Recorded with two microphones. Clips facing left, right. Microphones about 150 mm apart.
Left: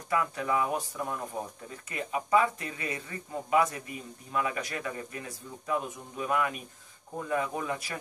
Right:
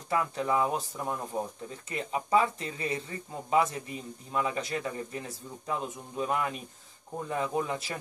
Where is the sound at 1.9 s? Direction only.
30° right (ahead or behind).